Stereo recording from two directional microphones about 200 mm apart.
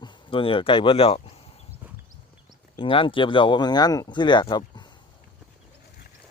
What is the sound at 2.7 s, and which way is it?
Speech, 25° left (ahead or behind).